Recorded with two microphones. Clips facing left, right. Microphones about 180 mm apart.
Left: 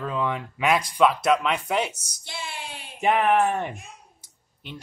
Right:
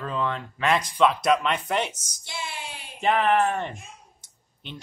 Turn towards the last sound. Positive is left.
turn(degrees=5)  # may be behind; listen again after turning